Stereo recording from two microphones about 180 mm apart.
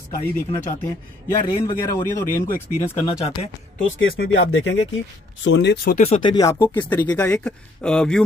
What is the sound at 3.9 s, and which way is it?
Speech, 75° left (ahead or behind).